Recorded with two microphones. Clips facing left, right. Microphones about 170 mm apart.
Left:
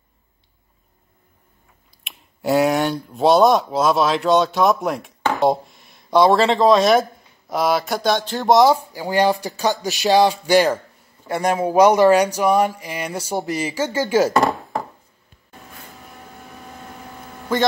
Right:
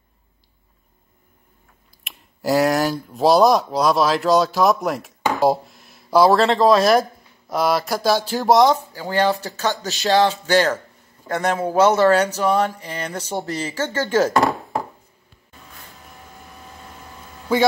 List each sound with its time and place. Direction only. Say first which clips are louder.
2.0 s speech: even; centre (ahead or behind)
8.7 s speech: left 2 dB; 10° left (ahead or behind)
17.5 s speech: right 2 dB; 10° right (ahead or behind)